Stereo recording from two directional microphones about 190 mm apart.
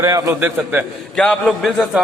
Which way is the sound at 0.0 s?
15° right (ahead or behind).